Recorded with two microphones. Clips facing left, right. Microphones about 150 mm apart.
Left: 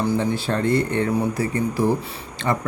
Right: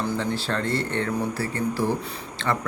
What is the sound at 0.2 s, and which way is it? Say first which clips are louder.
Speech: left 4 dB; 15° left (ahead or behind).